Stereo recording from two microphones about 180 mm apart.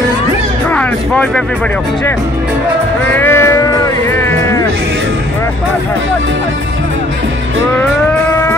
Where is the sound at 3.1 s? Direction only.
15° left (ahead or behind).